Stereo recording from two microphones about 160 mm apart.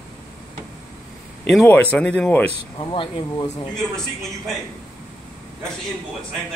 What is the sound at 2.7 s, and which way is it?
Speech, 30° left (ahead or behind).